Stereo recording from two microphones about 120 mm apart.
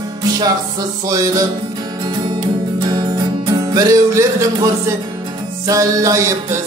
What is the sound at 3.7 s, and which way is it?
Music, 25° right (ahead or behind).